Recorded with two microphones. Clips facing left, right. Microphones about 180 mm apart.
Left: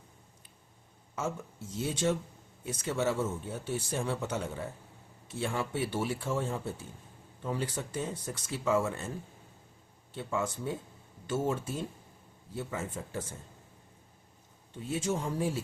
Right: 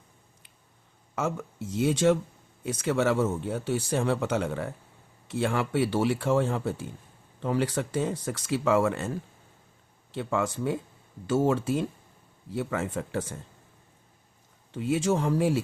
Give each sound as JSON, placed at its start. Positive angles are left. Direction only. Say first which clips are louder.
{"t": 1.1, "sound": "speech", "louder": "right 5 dB", "side_deg": -75}
{"t": 10.1, "sound": "speech", "louder": "right 5 dB", "side_deg": -80}
{"t": 14.7, "sound": "speech", "louder": "right 7 dB", "side_deg": -90}